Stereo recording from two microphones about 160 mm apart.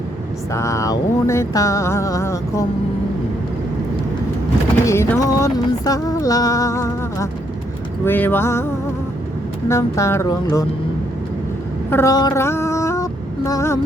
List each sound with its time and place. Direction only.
0.5 s music: 20° left (ahead or behind)
4.9 s music: 20° left (ahead or behind)
8.0 s speech: 10° left (ahead or behind)
9.6 s speech: 20° left (ahead or behind)
10.4 s music: 20° left (ahead or behind)
11.9 s female singing: 15° left (ahead or behind)